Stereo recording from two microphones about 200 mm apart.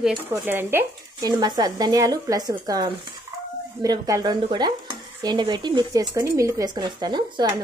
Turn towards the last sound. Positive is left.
turn(degrees=-20)  # may be behind; listen again after turning